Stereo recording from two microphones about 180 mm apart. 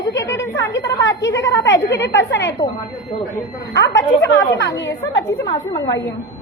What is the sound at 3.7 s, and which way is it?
Speech, 85° left.